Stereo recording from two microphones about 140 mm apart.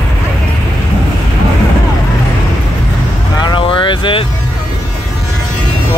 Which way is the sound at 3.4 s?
35° left (ahead or behind).